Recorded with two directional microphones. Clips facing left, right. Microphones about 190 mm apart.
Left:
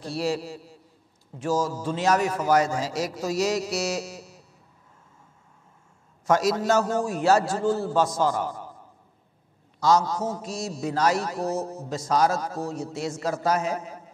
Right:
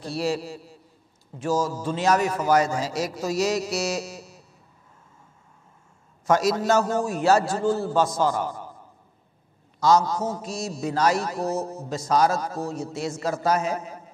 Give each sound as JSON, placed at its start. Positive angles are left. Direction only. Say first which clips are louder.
{"t": 1.5, "sound": "a man's voice", "louder": "right 1 dB", "side_deg": -25}
{"t": 2.0, "sound": "a man's voice", "louder": "right 1 dB", "side_deg": -10}
{"t": 6.2, "sound": "a man's voice", "louder": "right 1 dB", "side_deg": -15}
{"t": 6.8, "sound": "a man's voice", "louder": "right 1 dB", "side_deg": -20}
{"t": 9.9, "sound": "a man's voice", "louder": "right 2 dB", "side_deg": -25}
{"t": 10.8, "sound": "a man's voice", "louder": "right 1 dB", "side_deg": -15}
{"t": 11.5, "sound": "a man's voice", "louder": "right 1 dB", "side_deg": -30}
{"t": 11.9, "sound": "a man's voice", "louder": "right 1 dB", "side_deg": -15}
{"t": 12.9, "sound": "a man's voice", "louder": "right 1 dB", "side_deg": -15}